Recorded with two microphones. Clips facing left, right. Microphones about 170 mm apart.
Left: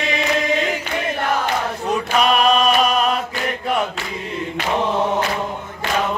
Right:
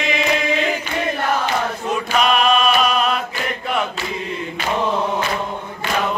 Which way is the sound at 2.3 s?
40° left (ahead or behind).